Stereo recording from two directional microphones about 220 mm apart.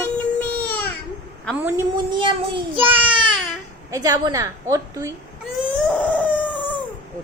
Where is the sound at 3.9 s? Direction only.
15° right (ahead or behind).